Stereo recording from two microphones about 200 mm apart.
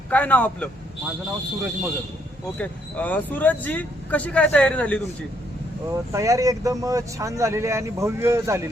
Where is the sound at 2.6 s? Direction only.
10° left (ahead or behind).